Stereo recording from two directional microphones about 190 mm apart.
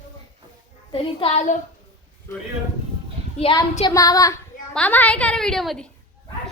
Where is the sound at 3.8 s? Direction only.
20° left (ahead or behind).